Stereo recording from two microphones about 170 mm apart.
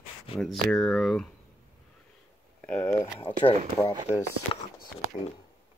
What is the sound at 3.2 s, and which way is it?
Speech, 35° left (ahead or behind).